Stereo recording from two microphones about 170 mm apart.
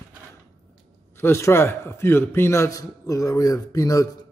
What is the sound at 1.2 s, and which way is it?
A man's voice, 15° left (ahead or behind).